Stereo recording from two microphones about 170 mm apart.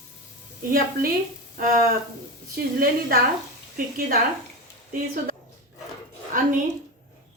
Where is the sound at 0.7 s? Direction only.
60° right (ahead or behind).